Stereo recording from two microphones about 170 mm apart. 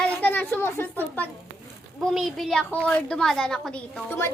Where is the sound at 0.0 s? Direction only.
10° left (ahead or behind).